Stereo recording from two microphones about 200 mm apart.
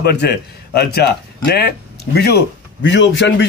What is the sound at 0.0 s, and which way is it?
A man's voice, 55° left (ahead or behind).